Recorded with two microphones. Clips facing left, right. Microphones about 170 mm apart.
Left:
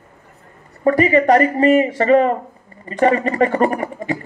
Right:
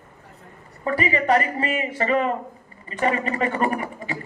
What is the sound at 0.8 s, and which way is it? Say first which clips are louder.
Speech: left 8 dB; 35° left (ahead or behind).